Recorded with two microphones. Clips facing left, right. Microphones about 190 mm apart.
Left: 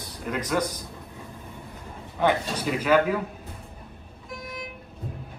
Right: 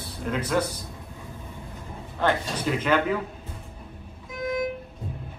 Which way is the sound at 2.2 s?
10° left (ahead or behind).